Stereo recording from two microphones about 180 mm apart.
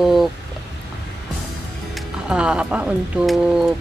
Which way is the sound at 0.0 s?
Centre (ahead or behind).